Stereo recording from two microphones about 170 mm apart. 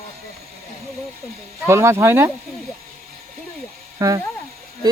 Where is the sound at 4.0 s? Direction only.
20° right (ahead or behind).